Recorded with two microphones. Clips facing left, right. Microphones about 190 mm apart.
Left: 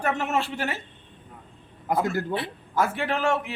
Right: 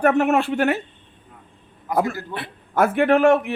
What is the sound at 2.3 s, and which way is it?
Speech, 55° right (ahead or behind).